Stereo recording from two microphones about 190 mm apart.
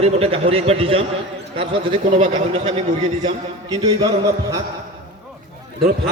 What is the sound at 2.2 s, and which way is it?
Speech, 40° right (ahead or behind).